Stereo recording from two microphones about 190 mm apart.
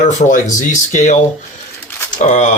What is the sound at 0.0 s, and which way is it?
Speech, 40° left (ahead or behind).